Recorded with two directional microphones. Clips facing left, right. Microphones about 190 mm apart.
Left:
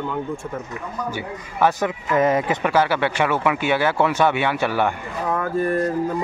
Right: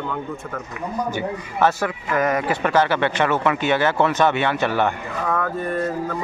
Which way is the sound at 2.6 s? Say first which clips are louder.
Right 2 dB; 10° left (ahead or behind).